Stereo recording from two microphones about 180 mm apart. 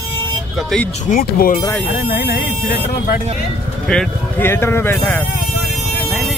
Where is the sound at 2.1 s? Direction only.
65° left (ahead or behind).